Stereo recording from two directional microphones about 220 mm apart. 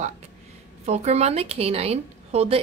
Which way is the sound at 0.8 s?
30° right (ahead or behind).